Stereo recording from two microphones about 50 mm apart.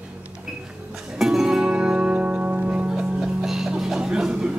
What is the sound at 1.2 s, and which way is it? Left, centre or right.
Music, centre.